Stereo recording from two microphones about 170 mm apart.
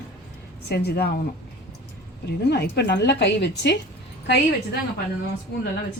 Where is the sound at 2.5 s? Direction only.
75° left (ahead or behind).